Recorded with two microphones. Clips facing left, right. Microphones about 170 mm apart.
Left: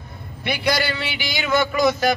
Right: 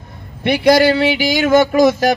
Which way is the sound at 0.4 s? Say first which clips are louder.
Right 11 dB; 45° right (ahead or behind).